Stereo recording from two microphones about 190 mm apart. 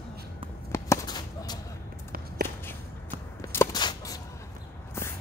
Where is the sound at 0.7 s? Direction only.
15° left (ahead or behind).